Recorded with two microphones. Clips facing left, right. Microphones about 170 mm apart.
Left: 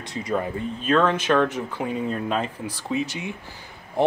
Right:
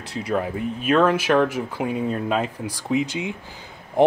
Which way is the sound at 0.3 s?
5° right (ahead or behind).